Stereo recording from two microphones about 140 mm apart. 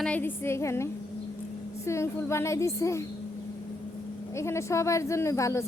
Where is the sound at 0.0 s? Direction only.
10° left (ahead or behind).